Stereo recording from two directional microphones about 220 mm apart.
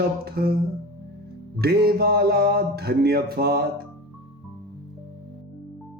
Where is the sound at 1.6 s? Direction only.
45° right (ahead or behind).